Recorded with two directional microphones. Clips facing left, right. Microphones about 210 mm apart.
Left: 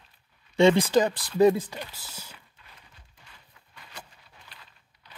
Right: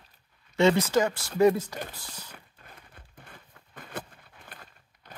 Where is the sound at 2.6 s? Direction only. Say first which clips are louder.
Right 5 dB; 50° right (ahead or behind).